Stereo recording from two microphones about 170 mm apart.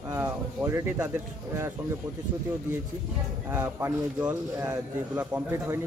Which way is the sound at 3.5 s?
15° right (ahead or behind).